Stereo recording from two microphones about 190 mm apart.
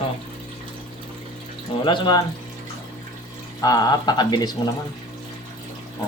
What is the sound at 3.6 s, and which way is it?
Speech, 20° left (ahead or behind).